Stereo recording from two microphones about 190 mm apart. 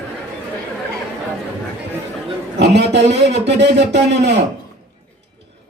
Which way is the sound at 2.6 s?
65° right (ahead or behind).